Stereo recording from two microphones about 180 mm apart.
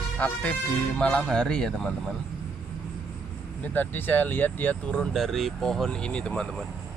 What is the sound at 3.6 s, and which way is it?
Speech, 10° left (ahead or behind).